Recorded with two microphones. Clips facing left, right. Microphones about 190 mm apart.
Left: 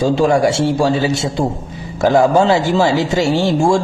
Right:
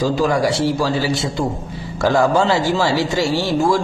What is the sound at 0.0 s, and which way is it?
A man's voice, 25° left (ahead or behind).